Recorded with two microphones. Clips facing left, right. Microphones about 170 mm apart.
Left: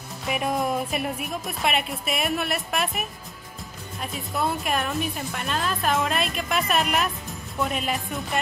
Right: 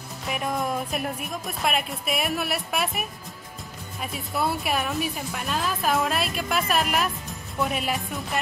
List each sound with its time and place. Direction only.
0.3 s speech: centre (ahead or behind)